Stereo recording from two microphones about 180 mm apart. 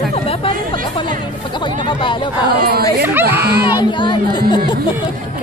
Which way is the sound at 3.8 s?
25° left (ahead or behind).